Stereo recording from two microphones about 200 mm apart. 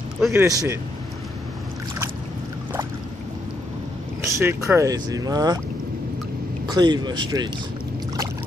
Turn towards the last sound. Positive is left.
turn(degrees=-20)  # may be behind; listen again after turning